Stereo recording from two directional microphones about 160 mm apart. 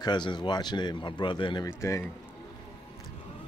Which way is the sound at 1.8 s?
20° left (ahead or behind).